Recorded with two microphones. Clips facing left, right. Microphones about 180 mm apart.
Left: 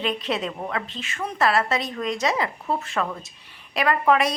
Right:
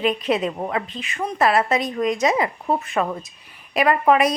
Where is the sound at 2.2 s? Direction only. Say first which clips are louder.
Right 4 dB; 20° right (ahead or behind).